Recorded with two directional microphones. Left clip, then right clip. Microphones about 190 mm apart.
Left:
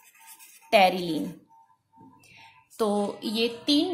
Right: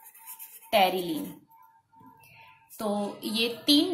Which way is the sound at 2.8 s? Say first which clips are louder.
Left 5 dB; 25° left (ahead or behind).